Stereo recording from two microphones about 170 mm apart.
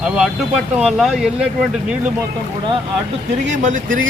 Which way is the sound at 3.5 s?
45° right (ahead or behind).